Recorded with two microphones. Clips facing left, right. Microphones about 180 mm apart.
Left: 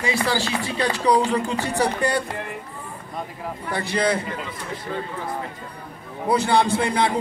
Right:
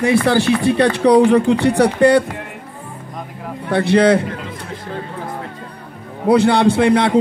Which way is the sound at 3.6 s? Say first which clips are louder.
Right 10 dB; 65° right (ahead or behind).